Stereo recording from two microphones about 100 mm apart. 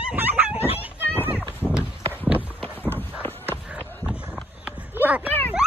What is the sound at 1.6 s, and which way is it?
Horse, 10° right (ahead or behind).